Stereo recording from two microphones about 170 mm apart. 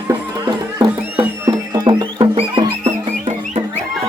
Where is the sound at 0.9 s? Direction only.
10° right (ahead or behind).